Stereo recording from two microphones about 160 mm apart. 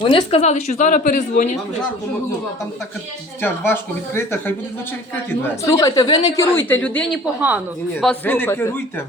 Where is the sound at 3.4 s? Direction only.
15° left (ahead or behind).